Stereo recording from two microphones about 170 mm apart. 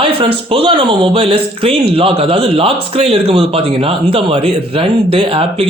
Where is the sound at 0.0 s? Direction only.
30° right (ahead or behind).